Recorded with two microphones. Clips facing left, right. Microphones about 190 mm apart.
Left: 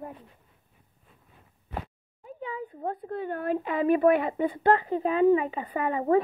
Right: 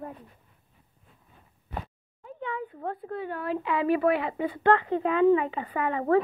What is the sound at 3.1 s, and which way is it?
Speech, 50° left (ahead or behind).